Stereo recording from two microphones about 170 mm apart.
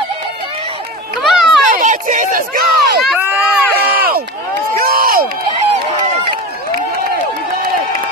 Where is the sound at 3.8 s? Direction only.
65° right (ahead or behind).